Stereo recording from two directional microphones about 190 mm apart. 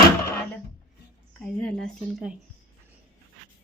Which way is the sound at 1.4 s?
5° left (ahead or behind).